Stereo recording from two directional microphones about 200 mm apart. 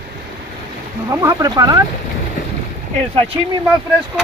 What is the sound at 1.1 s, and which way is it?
Speech, 15° right (ahead or behind).